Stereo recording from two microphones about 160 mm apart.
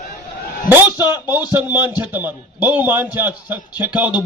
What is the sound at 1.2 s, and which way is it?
Speech, 25° left (ahead or behind).